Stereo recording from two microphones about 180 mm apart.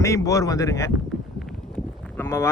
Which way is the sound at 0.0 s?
15° left (ahead or behind).